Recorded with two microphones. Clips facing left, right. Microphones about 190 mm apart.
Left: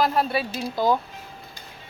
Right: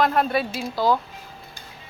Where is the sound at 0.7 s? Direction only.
20° left (ahead or behind).